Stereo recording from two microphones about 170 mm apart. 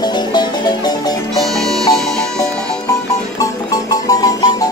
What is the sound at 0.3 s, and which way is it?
Music, 25° left (ahead or behind).